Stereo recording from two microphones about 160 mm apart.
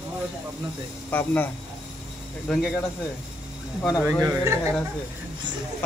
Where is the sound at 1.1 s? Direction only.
10° left (ahead or behind).